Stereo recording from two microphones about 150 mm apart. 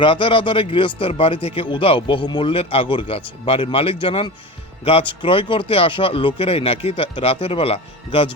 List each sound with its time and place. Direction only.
0.0 s a man's voice: 35° left (ahead or behind)